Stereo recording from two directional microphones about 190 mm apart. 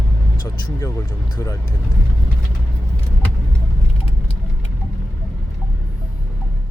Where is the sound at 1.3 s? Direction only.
15° left (ahead or behind).